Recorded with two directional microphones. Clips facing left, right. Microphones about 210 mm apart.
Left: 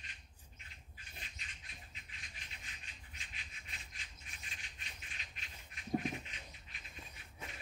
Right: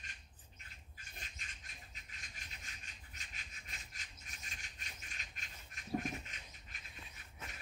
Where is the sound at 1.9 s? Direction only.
45° right (ahead or behind).